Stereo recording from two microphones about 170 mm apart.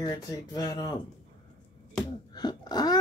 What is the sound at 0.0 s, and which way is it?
Speech, 20° left (ahead or behind).